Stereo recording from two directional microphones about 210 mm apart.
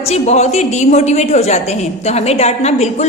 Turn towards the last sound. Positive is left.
turn(degrees=30)  # may be behind; listen again after turning